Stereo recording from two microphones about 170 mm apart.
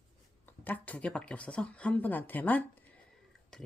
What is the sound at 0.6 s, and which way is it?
Speech, 10° left (ahead or behind).